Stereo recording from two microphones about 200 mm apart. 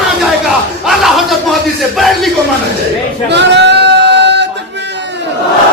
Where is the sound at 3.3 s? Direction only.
60° right (ahead or behind).